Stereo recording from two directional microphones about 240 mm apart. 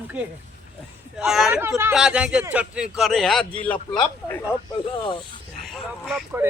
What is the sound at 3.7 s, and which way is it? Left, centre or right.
Speech, centre.